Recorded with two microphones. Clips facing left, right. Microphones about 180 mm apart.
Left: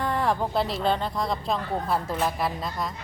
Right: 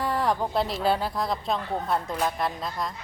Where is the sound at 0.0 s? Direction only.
Centre (ahead or behind).